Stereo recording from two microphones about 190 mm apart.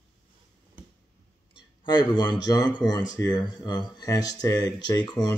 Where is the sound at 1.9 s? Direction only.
25° left (ahead or behind).